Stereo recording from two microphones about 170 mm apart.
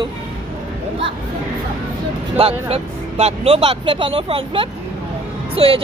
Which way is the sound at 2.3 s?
35° right (ahead or behind).